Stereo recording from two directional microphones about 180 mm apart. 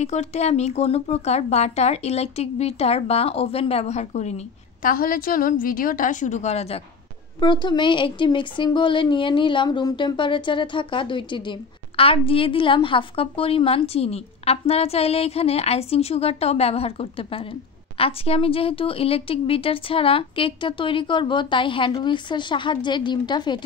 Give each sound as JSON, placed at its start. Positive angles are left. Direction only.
{"t": 0.0, "sound": "a woman's voice", "side_deg": 40}
{"t": 4.8, "sound": "a woman's voice", "side_deg": 50}